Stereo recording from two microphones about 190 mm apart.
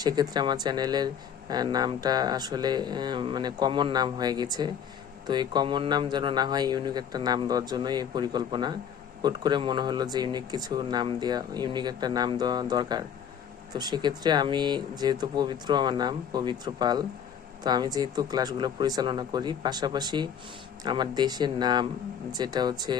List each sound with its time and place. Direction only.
0.0 s speech: 20° right (ahead or behind)